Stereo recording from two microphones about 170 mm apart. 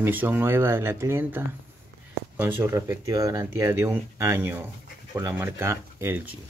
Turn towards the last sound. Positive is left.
turn(degrees=-15)  # may be behind; listen again after turning